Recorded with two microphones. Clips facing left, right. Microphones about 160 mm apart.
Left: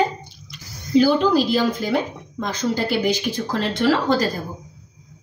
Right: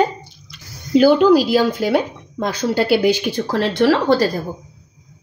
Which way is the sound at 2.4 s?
65° right (ahead or behind).